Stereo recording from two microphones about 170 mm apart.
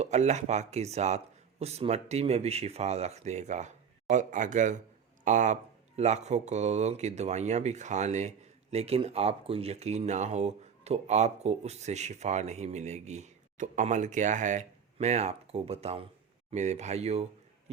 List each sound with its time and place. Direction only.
0.0 s speech: 40° right (ahead or behind)